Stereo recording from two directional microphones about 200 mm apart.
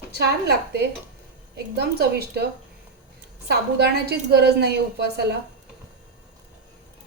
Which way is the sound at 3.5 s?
55° right (ahead or behind).